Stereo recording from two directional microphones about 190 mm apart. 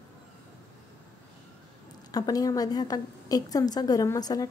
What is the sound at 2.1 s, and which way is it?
A woman's voice, 20° left (ahead or behind).